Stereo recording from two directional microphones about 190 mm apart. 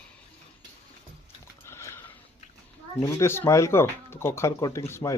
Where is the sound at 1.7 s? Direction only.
15° left (ahead or behind).